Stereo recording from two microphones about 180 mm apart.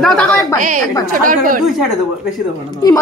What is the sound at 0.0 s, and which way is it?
Speech, 5° left (ahead or behind).